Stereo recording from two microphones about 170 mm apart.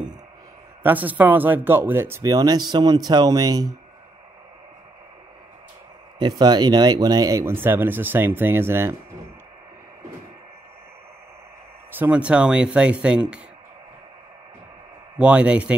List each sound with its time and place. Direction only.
0.8 s speech: 10° right (ahead or behind)
6.1 s speech: 25° right (ahead or behind)
11.9 s speech: 10° right (ahead or behind)
15.1 s speech: 5° right (ahead or behind)